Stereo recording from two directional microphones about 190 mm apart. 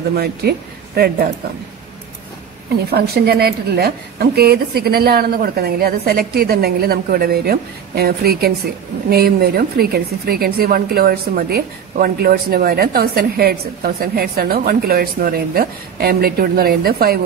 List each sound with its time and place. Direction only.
0.1 s speech: 55° right (ahead or behind)
2.9 s a woman's voice: 55° right (ahead or behind)